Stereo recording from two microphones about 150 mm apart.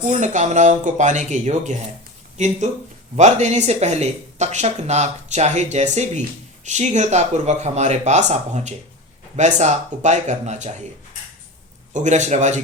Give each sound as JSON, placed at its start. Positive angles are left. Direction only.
{"t": 0.1, "sound": "speech", "side_deg": -50}
{"t": 11.9, "sound": "speech", "side_deg": -50}